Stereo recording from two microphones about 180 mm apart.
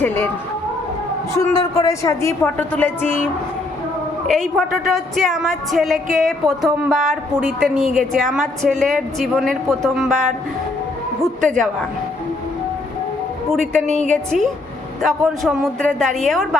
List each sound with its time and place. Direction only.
0.0 s a woman's voice: 10° left (ahead or behind)
1.5 s a woman's voice: 20° left (ahead or behind)
4.3 s a woman's voice: centre (ahead or behind)
11.2 s a woman's voice: 5° left (ahead or behind)
13.5 s a woman's voice: 5° left (ahead or behind)
13.8 s a woman's voice: 40° right (ahead or behind)
14.3 s a woman's voice: centre (ahead or behind)